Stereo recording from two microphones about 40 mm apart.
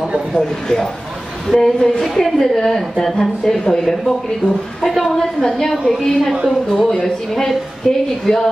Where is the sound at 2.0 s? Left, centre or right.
Centre.